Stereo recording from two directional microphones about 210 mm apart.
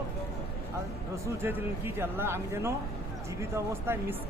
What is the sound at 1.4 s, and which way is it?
Speech, 10° right (ahead or behind).